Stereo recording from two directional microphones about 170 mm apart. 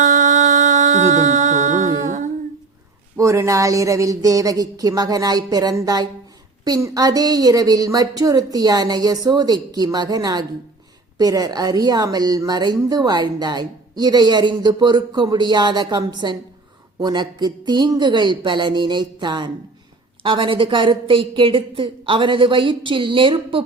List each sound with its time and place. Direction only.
0.0 s music: 50° right (ahead or behind)
3.2 s a woman's voice: 20° right (ahead or behind)